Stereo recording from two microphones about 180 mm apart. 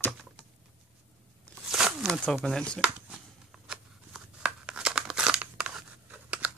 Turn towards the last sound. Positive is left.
turn(degrees=-10)  # may be behind; listen again after turning